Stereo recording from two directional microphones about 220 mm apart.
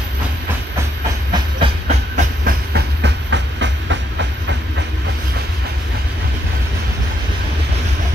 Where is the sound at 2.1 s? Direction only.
45° right (ahead or behind).